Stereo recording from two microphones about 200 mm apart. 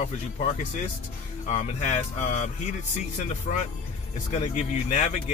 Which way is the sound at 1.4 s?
35° left (ahead or behind).